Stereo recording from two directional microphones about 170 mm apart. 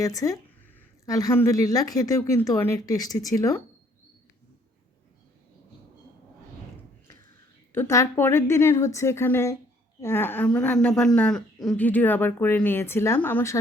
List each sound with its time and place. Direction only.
0.0 s speech: 20° left (ahead or behind)
7.7 s speech: 15° left (ahead or behind)